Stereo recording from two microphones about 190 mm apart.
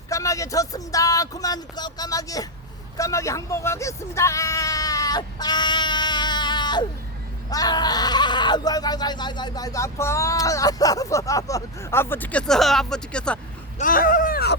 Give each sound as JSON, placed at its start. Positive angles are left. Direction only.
{"t": 0.1, "sound": "speech", "side_deg": 15}
{"t": 13.7, "sound": "speech", "side_deg": 45}